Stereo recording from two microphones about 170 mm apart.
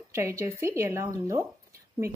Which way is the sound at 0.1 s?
15° right (ahead or behind).